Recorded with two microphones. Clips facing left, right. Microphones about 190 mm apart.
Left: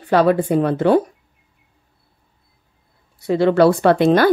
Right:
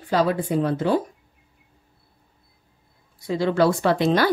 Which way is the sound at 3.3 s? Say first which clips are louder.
Left 6 dB; 65° left (ahead or behind).